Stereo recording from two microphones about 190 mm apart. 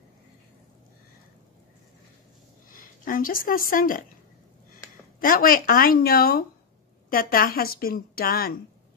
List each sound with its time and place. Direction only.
2.7 s speech: 45° left (ahead or behind)
5.2 s a woman's voice: 50° left (ahead or behind)